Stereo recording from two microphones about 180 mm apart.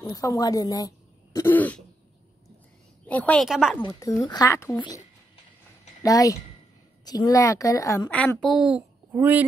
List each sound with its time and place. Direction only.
0.0 s speech: 20° left (ahead or behind)
3.1 s a woman's voice: 10° left (ahead or behind)
3.8 s speech: 20° left (ahead or behind)
6.0 s speech: 20° left (ahead or behind)
8.2 s a woman's voice: 5° left (ahead or behind)